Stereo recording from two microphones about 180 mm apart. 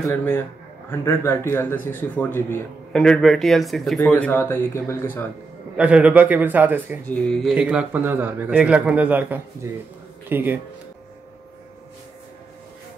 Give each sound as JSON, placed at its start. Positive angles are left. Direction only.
{"t": 0.1, "sound": "speech", "side_deg": 10}
{"t": 5.8, "sound": "a man's voice", "side_deg": -5}
{"t": 7.1, "sound": "speech", "side_deg": 5}
{"t": 7.5, "sound": "a man's voice", "side_deg": -5}